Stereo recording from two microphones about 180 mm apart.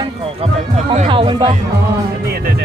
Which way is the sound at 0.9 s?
30° right (ahead or behind).